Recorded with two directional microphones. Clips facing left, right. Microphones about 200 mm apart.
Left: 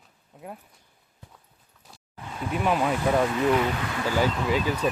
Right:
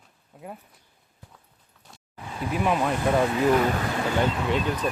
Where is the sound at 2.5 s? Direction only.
Centre (ahead or behind).